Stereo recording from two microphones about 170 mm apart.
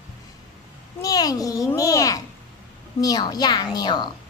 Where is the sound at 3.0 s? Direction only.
25° left (ahead or behind).